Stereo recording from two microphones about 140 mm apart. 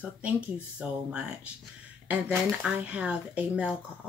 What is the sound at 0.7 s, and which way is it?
Speech, 10° right (ahead or behind).